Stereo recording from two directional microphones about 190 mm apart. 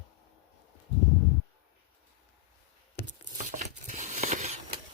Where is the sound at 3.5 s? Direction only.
40° right (ahead or behind).